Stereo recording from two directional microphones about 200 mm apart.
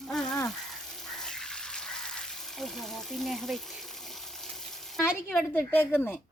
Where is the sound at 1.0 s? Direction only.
Centre (ahead or behind).